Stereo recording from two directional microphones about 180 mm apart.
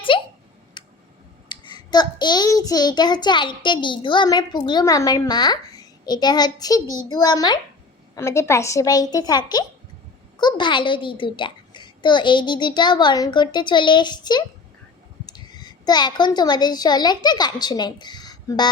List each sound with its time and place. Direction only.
0.1 s a sound: 30° left (ahead or behind)
0.8 s tick: 25° left (ahead or behind)
1.5 s a child's voice: 25° left (ahead or behind)